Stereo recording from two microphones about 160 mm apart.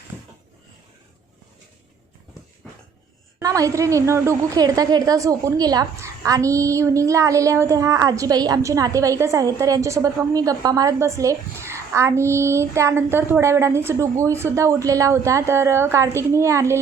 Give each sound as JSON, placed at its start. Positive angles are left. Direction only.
{"t": 3.4, "sound": "a woman's voice", "side_deg": -20}